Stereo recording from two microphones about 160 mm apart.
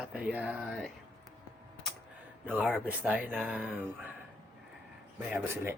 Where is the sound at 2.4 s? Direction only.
10° right (ahead or behind).